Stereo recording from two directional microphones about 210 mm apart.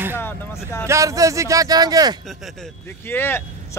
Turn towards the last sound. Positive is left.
turn(degrees=10)  # may be behind; listen again after turning